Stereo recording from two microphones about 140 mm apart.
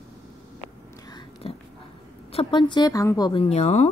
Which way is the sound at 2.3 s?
35° left (ahead or behind).